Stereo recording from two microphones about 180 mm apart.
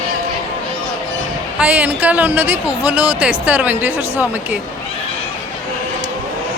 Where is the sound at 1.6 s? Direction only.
10° right (ahead or behind).